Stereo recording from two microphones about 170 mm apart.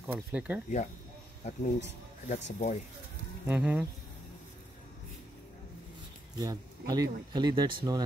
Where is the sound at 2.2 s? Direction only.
45° left (ahead or behind).